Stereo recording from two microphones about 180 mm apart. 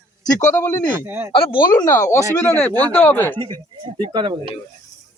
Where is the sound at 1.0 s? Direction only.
10° right (ahead or behind).